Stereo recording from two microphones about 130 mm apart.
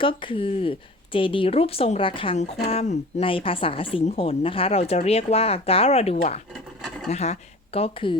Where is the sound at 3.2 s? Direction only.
45° left (ahead or behind).